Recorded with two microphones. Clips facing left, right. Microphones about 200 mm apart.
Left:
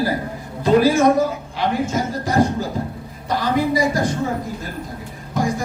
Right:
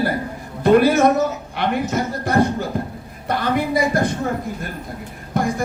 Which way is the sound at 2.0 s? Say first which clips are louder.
Even; 60° right (ahead or behind).